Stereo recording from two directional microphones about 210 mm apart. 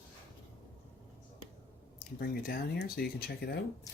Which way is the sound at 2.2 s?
45° left (ahead or behind).